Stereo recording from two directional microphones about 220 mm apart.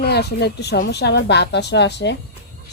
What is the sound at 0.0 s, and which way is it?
A woman's voice, 50° left (ahead or behind).